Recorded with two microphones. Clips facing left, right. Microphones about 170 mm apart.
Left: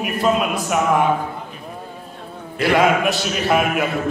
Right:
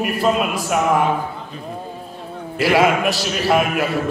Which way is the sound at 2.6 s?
5° right (ahead or behind).